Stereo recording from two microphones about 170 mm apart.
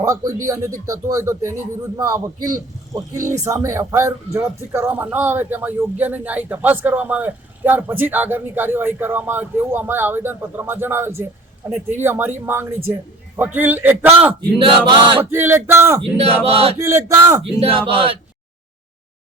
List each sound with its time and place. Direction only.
0.0 s a man's voice: 20° right (ahead or behind)
14.6 s a man's voice: 30° right (ahead or behind)
15.2 s speech: 15° right (ahead or behind)
16.0 s a sound: 35° right (ahead or behind)
16.7 s speech: 15° right (ahead or behind)
17.6 s a sound: 30° right (ahead or behind)